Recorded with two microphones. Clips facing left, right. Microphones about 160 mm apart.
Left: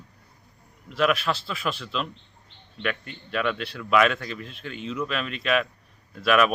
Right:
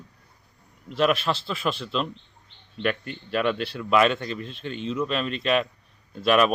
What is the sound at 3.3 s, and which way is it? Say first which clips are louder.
Speech: right 3 dB; 35° right (ahead or behind).